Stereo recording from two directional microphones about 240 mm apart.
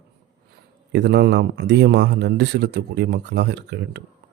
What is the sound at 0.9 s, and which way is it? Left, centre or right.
Speech, right.